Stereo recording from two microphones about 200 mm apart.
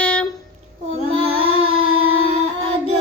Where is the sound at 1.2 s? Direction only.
30° right (ahead or behind).